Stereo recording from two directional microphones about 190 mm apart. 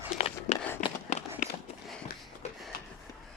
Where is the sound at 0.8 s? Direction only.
45° left (ahead or behind).